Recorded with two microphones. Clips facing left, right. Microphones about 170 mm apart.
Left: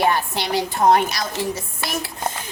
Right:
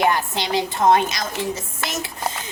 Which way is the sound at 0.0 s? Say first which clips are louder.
Even; 20° right (ahead or behind).